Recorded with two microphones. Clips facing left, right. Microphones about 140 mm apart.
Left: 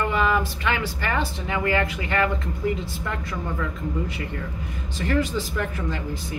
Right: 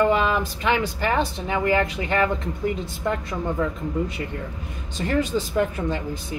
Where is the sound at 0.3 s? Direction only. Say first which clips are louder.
Right 1 dB; 25° right (ahead or behind).